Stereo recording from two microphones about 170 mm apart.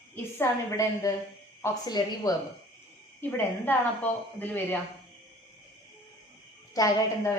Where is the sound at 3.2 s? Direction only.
10° left (ahead or behind).